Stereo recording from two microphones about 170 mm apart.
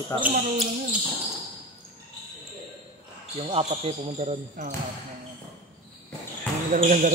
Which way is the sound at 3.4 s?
35° right (ahead or behind).